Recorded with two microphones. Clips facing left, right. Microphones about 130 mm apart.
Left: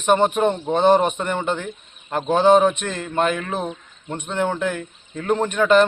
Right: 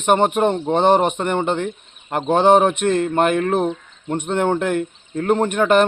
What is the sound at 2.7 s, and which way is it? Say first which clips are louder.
Speech: right 8 dB; 55° right (ahead or behind).